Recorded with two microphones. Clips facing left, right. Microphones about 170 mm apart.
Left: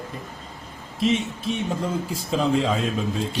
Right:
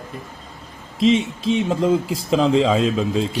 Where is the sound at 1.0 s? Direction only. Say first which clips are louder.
Right 6 dB; 90° right.